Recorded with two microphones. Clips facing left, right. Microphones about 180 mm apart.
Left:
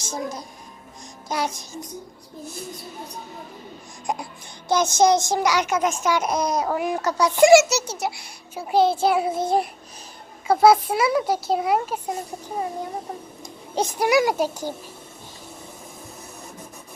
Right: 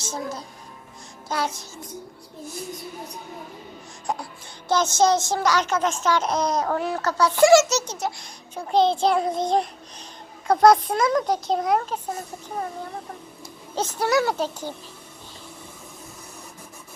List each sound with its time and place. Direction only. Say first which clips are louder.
0.1 s a child's voice: left 2 dB; 15° left (ahead or behind)
4.0 s a child's voice: left 1 dB; 15° left (ahead or behind)
13.4 s speech: left 3 dB; 15° left (ahead or behind)